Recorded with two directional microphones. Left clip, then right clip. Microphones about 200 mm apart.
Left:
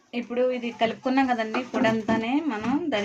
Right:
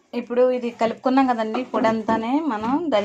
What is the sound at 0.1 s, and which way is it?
Speech, 30° right (ahead or behind).